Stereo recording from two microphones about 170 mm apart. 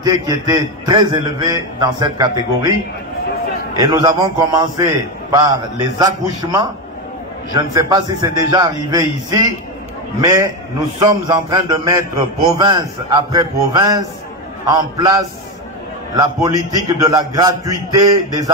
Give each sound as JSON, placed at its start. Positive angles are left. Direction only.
{"t": 0.0, "sound": "a man's voice", "side_deg": -20}
{"t": 3.7, "sound": "a man's voice", "side_deg": -25}
{"t": 16.4, "sound": "a man's voice", "side_deg": -20}